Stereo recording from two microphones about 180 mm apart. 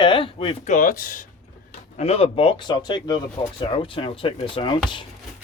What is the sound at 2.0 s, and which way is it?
Speech, 35° left (ahead or behind).